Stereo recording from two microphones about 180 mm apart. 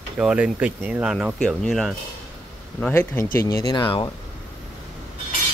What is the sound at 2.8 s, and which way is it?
A man's voice, 15° left (ahead or behind).